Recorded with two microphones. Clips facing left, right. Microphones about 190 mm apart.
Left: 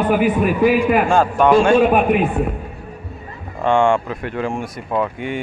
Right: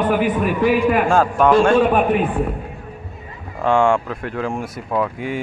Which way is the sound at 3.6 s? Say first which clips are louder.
Left 1 dB; centre (ahead or behind).